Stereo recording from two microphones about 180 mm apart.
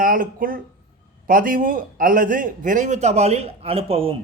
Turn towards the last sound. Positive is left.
turn(degrees=-30)  # may be behind; listen again after turning